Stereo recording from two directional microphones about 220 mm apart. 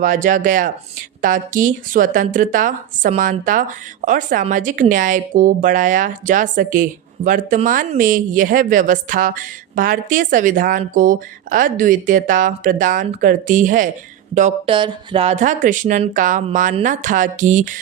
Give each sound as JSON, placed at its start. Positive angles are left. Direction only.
{"t": 0.0, "sound": "speech", "side_deg": -35}
{"t": 14.8, "sound": "speech", "side_deg": -25}